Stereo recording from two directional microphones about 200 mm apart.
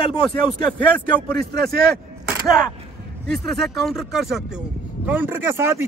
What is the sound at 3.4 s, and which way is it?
Speech, centre (ahead or behind).